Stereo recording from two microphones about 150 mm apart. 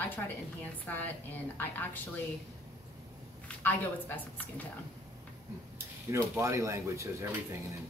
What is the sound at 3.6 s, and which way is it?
Speech, 10° left (ahead or behind).